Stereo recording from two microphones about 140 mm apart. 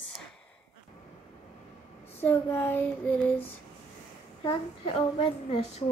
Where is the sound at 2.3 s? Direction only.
15° left (ahead or behind).